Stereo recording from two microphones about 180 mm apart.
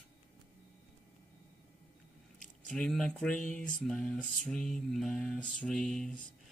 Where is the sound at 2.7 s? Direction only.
5° left (ahead or behind).